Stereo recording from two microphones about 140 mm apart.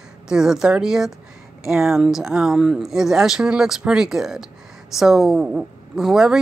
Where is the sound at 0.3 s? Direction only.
5° right (ahead or behind).